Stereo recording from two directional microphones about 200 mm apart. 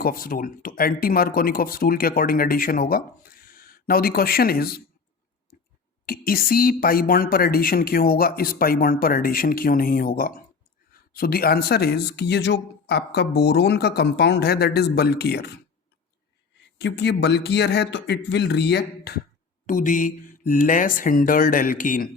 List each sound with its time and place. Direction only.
0.0 s speech: 45° left (ahead or behind)
5.5 s a sound: 50° left (ahead or behind)
6.1 s speech: 45° left (ahead or behind)
16.7 s speech: 60° left (ahead or behind)
19.6 s speech: 40° left (ahead or behind)